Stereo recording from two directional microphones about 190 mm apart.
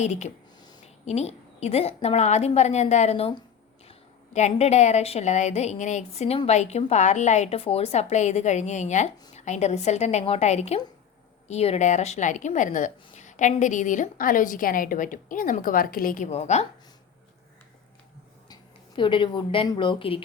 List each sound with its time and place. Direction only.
0.0 s speech: 35° left (ahead or behind)
4.4 s speech: 35° left (ahead or behind)
18.4 s speech: 25° left (ahead or behind)